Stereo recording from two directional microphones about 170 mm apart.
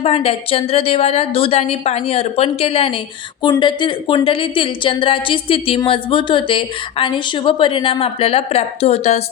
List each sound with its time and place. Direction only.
0.0 s a woman's voice: 35° left (ahead or behind)